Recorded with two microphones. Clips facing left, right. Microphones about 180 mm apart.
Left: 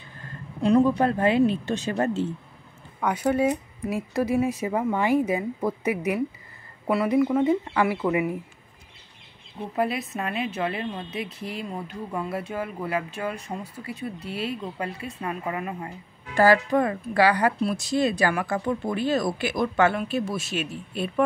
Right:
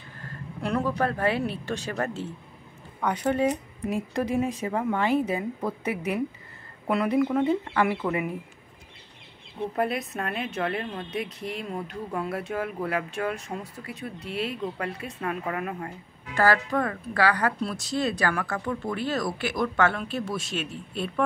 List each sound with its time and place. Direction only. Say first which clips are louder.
0.6 s speech: left 7 dB; 20° left (ahead or behind)
3.0 s a woman's voice: left 2 dB; 10° left (ahead or behind)
9.8 s a woman's voice: left 2 dB; centre (ahead or behind)